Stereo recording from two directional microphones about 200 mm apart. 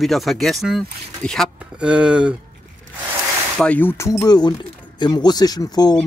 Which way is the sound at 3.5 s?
5° left (ahead or behind).